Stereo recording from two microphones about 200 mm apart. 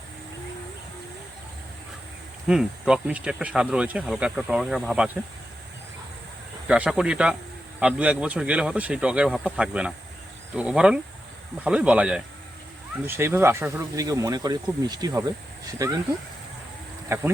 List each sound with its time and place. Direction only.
2.5 s speech: 5° right (ahead or behind)
6.7 s speech: 5° right (ahead or behind)
17.1 s speech: 15° right (ahead or behind)